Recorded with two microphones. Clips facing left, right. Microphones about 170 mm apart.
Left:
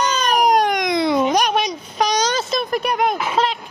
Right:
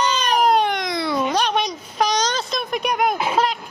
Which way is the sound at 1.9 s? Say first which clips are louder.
Left 2 dB; centre (ahead or behind).